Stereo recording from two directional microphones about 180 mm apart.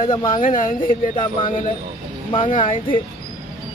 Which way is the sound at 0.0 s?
25° left (ahead or behind).